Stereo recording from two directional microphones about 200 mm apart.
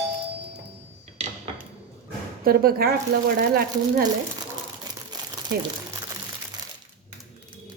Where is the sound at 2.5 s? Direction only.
50° right (ahead or behind).